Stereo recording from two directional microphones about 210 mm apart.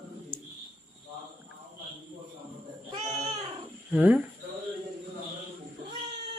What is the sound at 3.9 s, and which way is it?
Speech, 5° right (ahead or behind).